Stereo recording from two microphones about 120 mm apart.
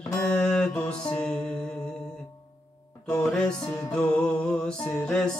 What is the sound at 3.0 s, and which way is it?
Music, 5° left (ahead or behind).